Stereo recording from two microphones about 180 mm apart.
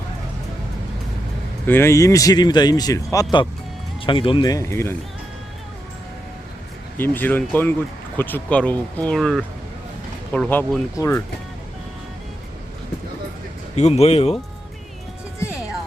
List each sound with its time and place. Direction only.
1.6 s speech: 15° left (ahead or behind)
4.0 s speech: 30° left (ahead or behind)
6.9 s speech: 10° left (ahead or behind)
13.7 s speech: 35° left (ahead or behind)